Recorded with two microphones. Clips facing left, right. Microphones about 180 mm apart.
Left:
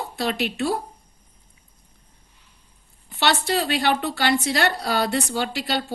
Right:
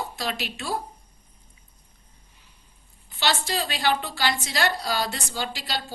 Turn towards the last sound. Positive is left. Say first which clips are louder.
# left 6 dB
turn(degrees=60)  # may be behind; listen again after turning